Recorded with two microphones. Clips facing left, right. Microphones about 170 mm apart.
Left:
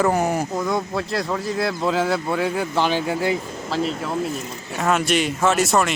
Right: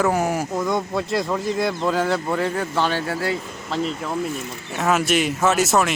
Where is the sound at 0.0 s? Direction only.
5° right (ahead or behind); by 3.3 s 15° left (ahead or behind).